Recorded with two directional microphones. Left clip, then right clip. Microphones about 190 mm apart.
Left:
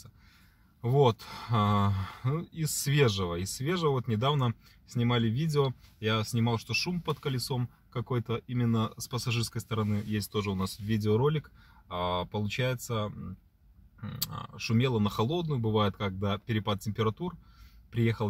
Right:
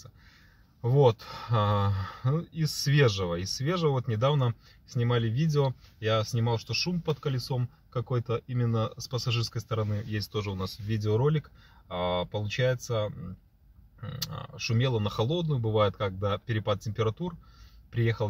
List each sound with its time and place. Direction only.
0.8 s speech: 25° left (ahead or behind)
14.1 s speech: 20° left (ahead or behind)